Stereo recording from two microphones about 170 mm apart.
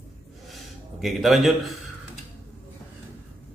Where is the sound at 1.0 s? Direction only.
Centre (ahead or behind).